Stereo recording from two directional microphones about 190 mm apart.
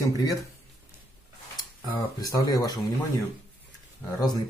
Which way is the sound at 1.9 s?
20° left (ahead or behind).